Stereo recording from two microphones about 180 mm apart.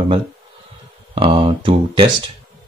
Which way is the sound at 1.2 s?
30° right (ahead or behind).